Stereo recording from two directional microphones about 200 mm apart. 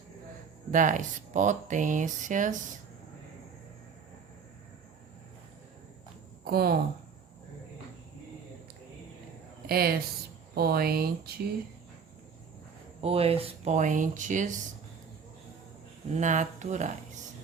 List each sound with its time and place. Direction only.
0.7 s speech: 40° right (ahead or behind)
6.4 s speech: 50° right (ahead or behind)
9.6 s speech: 50° right (ahead or behind)
13.0 s speech: 30° right (ahead or behind)
16.1 s speech: 35° right (ahead or behind)